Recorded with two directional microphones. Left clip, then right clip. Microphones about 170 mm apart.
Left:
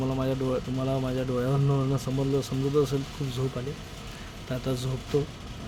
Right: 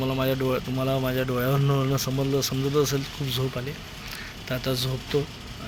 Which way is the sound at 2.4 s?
10° left (ahead or behind).